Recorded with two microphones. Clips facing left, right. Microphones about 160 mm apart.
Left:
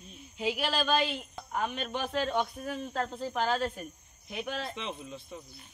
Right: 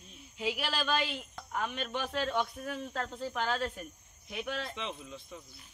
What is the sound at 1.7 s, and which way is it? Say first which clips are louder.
Speech: left 2 dB; 15° left (ahead or behind).